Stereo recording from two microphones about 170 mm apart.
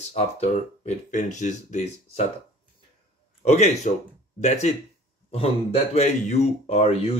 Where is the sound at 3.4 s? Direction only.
40° left (ahead or behind).